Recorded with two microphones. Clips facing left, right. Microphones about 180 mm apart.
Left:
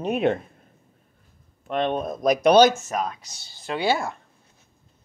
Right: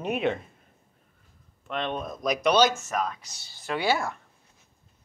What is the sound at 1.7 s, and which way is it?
Speech, 45° left (ahead or behind).